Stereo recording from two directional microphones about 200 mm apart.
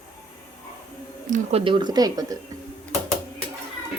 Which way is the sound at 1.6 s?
25° right (ahead or behind).